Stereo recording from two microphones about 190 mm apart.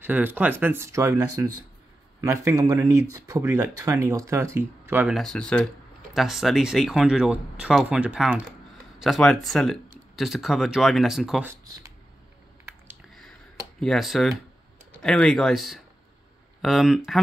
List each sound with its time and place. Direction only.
0.0 s speech: 10° right (ahead or behind)
5.2 s speech: 5° left (ahead or behind)
11.6 s a sound: 20° right (ahead or behind)
13.7 s speech: centre (ahead or behind)